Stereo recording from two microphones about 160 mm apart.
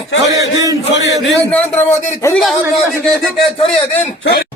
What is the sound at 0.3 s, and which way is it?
Speech, 20° right (ahead or behind).